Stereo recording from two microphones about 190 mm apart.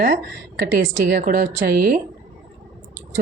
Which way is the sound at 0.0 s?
50° right (ahead or behind).